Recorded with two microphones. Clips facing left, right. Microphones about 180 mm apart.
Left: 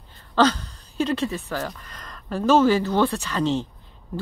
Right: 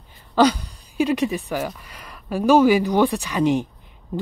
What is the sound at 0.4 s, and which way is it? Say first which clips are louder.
Speech: right 3 dB; 10° right (ahead or behind).